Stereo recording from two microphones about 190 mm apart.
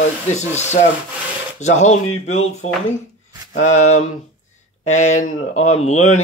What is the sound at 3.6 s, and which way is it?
Speech, 40° left (ahead or behind).